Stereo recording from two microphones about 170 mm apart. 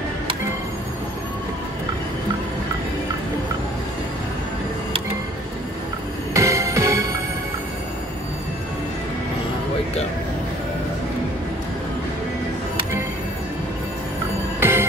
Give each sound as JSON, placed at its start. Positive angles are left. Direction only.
{"t": 6.3, "sound": "music", "side_deg": -20}
{"t": 14.6, "sound": "music", "side_deg": -15}